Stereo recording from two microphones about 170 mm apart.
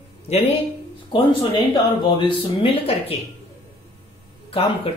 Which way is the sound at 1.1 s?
30° left (ahead or behind).